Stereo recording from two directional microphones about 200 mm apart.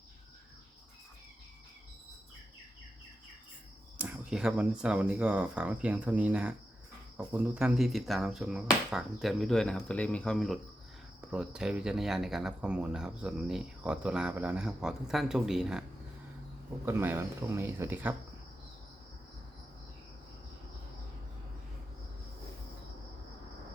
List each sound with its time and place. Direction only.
3.9 s speech: 10° right (ahead or behind)
16.8 s speech: 10° right (ahead or behind)